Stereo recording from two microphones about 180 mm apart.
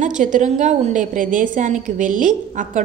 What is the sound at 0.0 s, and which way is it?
A woman's voice, 45° right (ahead or behind).